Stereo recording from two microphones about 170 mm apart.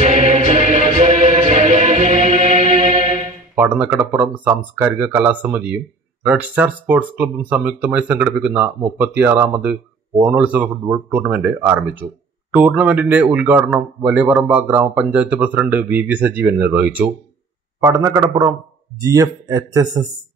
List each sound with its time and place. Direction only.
0.0 s music: 40° right (ahead or behind)
3.5 s speech: 10° right (ahead or behind)